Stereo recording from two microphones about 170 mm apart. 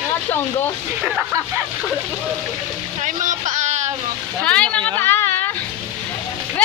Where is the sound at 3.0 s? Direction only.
45° right (ahead or behind).